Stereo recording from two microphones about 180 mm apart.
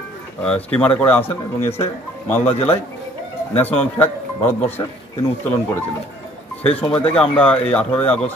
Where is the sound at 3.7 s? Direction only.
10° left (ahead or behind).